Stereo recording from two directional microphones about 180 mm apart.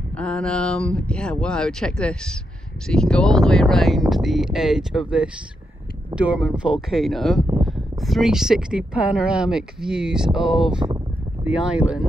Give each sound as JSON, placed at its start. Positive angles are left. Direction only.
{"t": 0.2, "sound": "speech", "side_deg": 5}